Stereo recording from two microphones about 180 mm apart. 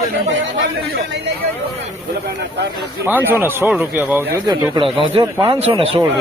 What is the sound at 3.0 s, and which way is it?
Speech, 10° right (ahead or behind).